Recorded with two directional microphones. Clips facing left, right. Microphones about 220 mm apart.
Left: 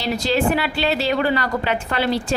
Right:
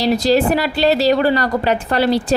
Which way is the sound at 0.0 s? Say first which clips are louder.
Right 6 dB; 35° right (ahead or behind).